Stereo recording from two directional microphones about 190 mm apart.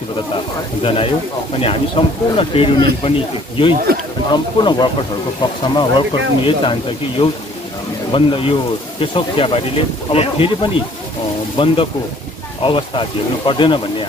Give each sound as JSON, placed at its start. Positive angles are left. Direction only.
{"t": 0.8, "sound": "speech", "side_deg": 30}